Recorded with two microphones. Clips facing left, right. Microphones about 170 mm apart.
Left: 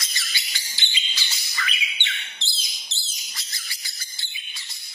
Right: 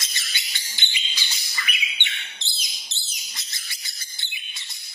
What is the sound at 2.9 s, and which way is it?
Bird, 20° right (ahead or behind).